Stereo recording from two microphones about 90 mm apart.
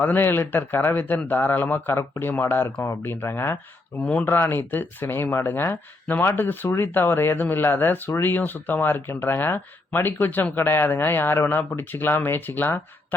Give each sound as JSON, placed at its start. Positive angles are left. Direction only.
{"t": 0.0, "sound": "speech", "side_deg": 20}
{"t": 4.0, "sound": "speech", "side_deg": 15}